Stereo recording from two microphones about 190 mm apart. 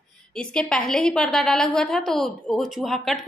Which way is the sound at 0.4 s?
5° left (ahead or behind).